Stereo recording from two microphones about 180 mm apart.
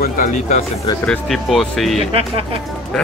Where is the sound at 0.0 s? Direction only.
50° left (ahead or behind).